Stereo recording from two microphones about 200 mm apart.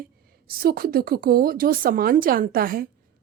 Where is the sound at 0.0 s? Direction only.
45° right (ahead or behind).